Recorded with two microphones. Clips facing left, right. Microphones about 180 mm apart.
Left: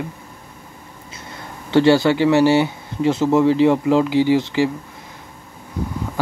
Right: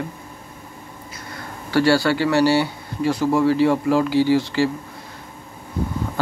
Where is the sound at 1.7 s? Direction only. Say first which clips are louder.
Left 3 dB; 20° left (ahead or behind).